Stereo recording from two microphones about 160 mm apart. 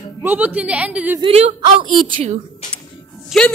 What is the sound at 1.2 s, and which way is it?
Speech, 35° right (ahead or behind).